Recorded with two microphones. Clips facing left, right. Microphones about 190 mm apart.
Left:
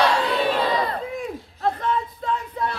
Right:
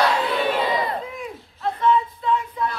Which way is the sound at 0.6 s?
20° right (ahead or behind).